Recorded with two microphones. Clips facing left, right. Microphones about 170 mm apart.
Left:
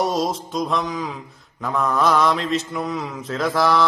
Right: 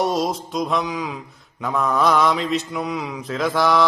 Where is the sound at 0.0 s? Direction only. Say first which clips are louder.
Even; centre (ahead or behind).